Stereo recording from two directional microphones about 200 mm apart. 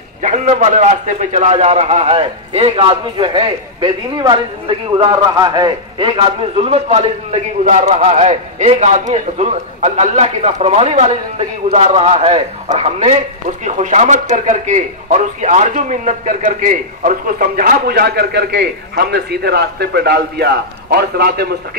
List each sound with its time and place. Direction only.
0.2 s a man's voice: 35° right (ahead or behind); by 21.5 s 50° right (ahead or behind)